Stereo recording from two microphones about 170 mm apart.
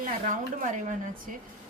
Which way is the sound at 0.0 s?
50° right (ahead or behind).